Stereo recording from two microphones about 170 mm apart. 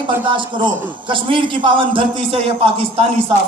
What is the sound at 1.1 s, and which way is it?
A man's voice, 30° right (ahead or behind).